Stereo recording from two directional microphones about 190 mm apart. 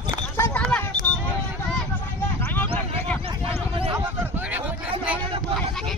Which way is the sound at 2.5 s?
10° left (ahead or behind).